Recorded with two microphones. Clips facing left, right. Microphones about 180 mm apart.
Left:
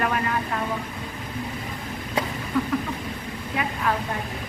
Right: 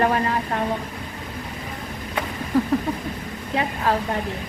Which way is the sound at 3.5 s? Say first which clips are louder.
Right 4 dB; 30° right (ahead or behind).